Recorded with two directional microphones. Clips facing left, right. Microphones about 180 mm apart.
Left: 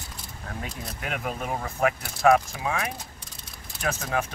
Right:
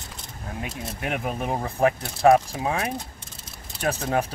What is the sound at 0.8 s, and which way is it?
Speech, 25° right (ahead or behind).